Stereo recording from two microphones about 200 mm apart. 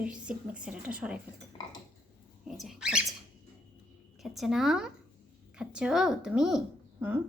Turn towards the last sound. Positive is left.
turn(degrees=-5)  # may be behind; listen again after turning